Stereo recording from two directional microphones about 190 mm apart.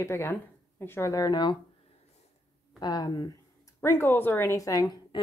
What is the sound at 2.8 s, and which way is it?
A woman's voice, 20° left (ahead or behind).